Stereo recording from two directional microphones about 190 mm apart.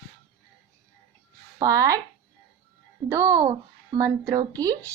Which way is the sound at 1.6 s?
20° right (ahead or behind).